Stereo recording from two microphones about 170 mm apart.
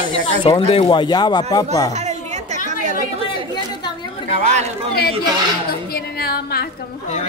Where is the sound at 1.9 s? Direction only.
40° right (ahead or behind).